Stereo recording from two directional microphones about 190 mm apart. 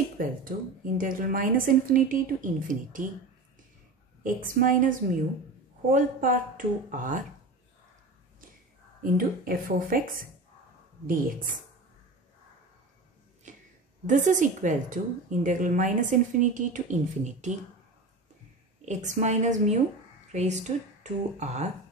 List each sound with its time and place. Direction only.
0.2 s a woman's voice: 45° right (ahead or behind)
4.2 s a woman's voice: 45° right (ahead or behind)
9.1 s a woman's voice: 50° right (ahead or behind)
13.5 s a sound: 40° right (ahead or behind)
14.0 s a woman's voice: 40° right (ahead or behind)
18.9 s speech: 40° right (ahead or behind)